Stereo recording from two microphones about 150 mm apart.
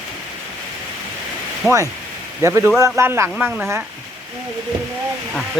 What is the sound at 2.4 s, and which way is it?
Speech, 20° right (ahead or behind).